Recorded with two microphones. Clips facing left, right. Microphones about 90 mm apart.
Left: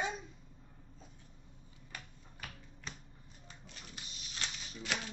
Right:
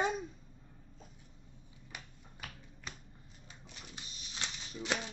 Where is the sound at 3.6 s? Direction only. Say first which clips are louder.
Right 1 dB; 20° right (ahead or behind).